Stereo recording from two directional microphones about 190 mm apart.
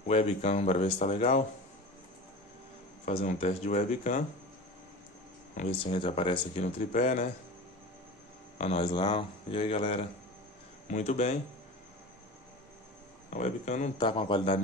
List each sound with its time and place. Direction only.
0.1 s speech: 35° left (ahead or behind)
3.1 s speech: 30° left (ahead or behind)
5.6 s speech: 30° left (ahead or behind)
6.9 s speech: 40° left (ahead or behind)
8.5 s speech: 35° left (ahead or behind)
13.3 s speech: 35° left (ahead or behind)
13.9 s speech: 25° left (ahead or behind)